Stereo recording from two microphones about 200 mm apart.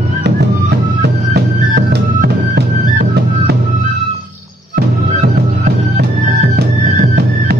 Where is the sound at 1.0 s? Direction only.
55° right (ahead or behind).